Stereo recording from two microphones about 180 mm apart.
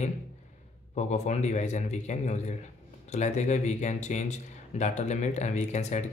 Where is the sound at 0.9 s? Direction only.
40° left (ahead or behind).